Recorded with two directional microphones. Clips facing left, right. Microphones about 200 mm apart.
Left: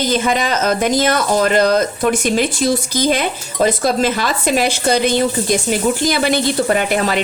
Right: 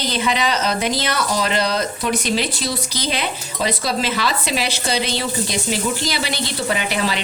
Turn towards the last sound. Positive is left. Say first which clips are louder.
# left 5 dB
turn(degrees=50)  # may be behind; listen again after turning